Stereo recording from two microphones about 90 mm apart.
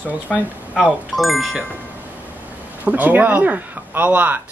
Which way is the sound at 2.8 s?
20° right (ahead or behind).